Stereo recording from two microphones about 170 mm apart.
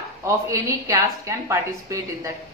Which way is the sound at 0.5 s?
20° right (ahead or behind).